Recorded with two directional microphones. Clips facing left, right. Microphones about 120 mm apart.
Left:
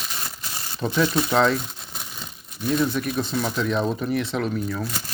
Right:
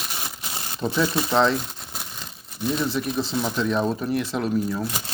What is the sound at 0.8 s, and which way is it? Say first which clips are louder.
Speech: left 1 dB; 5° right (ahead or behind).